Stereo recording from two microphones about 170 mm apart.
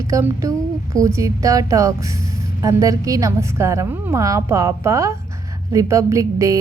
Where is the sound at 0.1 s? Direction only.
15° right (ahead or behind).